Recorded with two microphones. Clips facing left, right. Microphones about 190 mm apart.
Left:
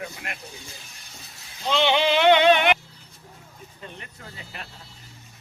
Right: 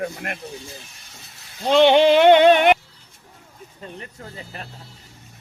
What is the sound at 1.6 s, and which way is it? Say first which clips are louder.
Music: right 8 dB; 50° right (ahead or behind).